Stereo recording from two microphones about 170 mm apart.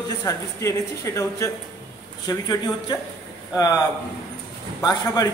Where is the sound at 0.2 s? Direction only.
20° left (ahead or behind).